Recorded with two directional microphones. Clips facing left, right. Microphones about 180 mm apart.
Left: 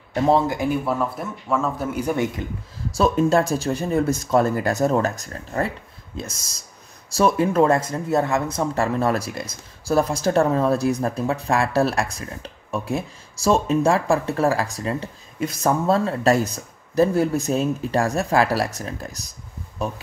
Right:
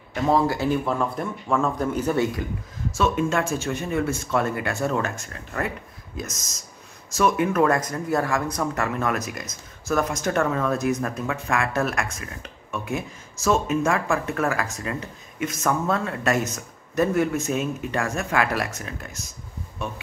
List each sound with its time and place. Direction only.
0.5 s speech: 15° left (ahead or behind)
3.0 s speech: 35° left (ahead or behind)